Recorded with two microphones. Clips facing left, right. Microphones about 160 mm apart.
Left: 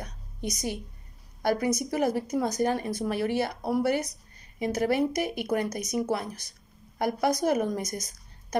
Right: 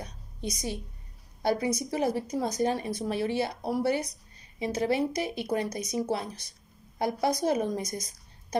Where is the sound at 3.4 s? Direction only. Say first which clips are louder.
Left 1 dB; 55° left (ahead or behind).